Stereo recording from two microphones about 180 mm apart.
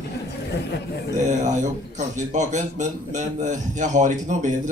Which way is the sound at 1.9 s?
40° right (ahead or behind).